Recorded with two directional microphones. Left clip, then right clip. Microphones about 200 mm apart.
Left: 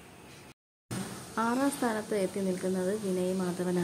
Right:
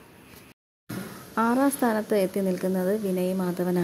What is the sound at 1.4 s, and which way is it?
A woman's voice, 30° right (ahead or behind).